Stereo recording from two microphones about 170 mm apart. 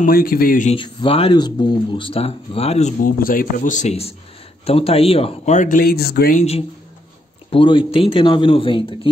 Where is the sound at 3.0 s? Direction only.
55° left (ahead or behind).